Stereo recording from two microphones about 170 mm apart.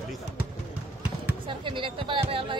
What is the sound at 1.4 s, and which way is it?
Speech, 30° right (ahead or behind).